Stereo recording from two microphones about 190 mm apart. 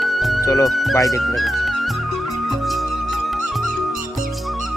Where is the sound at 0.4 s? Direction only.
20° left (ahead or behind).